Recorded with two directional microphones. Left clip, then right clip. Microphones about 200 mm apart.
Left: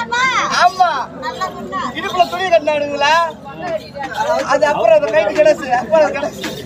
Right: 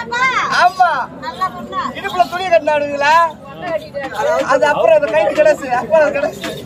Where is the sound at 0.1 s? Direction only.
5° left (ahead or behind).